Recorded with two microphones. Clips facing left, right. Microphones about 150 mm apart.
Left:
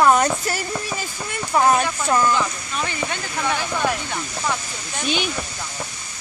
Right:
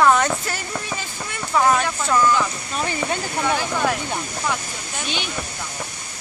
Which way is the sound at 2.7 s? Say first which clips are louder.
Right 2 dB; 35° right (ahead or behind).